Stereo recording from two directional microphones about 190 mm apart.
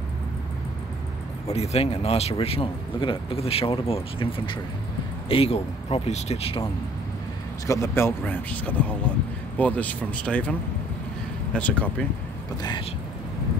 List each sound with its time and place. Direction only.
1.5 s speech: 35° left (ahead or behind)
7.6 s speech: 15° left (ahead or behind)
11.5 s speech: 5° left (ahead or behind)